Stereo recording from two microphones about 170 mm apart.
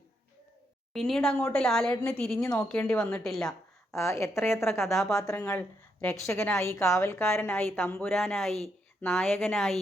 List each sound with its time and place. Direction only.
0.9 s a woman's voice: centre (ahead or behind)
3.9 s a woman's voice: 15° left (ahead or behind)
4.9 s a woman's voice: centre (ahead or behind)
9.0 s a woman's voice: 10° left (ahead or behind)